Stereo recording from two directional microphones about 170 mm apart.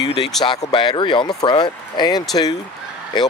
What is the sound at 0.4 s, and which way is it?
Speech, 25° left (ahead or behind).